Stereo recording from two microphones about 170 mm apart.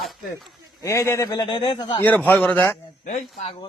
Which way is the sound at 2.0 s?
10° left (ahead or behind).